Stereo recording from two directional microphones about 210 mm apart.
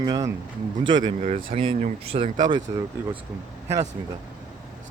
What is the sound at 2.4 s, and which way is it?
Speech, 20° right (ahead or behind).